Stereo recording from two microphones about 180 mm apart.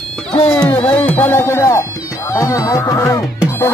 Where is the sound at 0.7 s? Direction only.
10° left (ahead or behind).